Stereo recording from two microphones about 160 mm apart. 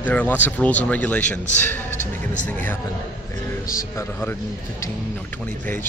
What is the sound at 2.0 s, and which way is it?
Music, 50° left (ahead or behind).